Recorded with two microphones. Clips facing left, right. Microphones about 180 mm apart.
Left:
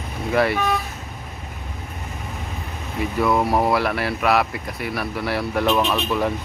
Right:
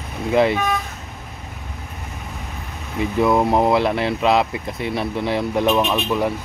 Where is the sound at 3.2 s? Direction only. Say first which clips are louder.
Right 3 dB; 20° right (ahead or behind).